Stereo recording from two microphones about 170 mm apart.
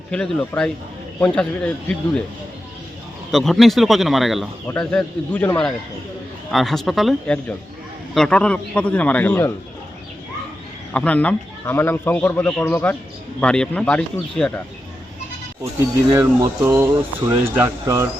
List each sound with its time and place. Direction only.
0.1 s a man's voice: 5° left (ahead or behind)
3.3 s a man's voice: centre (ahead or behind)
10.9 s a man's voice: 10° left (ahead or behind)
16.1 s speech: 15° right (ahead or behind)